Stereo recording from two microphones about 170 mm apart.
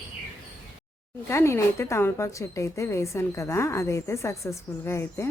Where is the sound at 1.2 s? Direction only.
15° left (ahead or behind).